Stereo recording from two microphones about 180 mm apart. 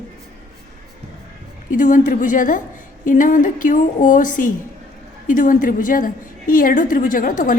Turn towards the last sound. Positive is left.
turn(degrees=45)  # may be behind; listen again after turning